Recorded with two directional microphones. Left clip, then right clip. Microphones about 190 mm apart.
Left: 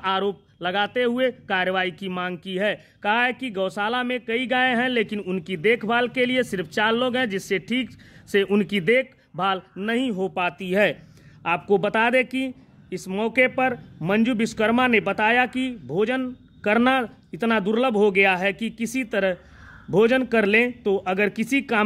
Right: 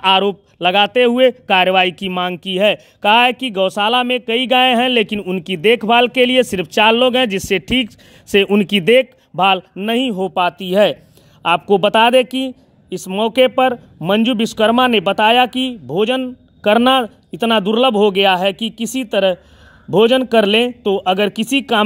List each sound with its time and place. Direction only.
0.0 s speech: 35° right (ahead or behind)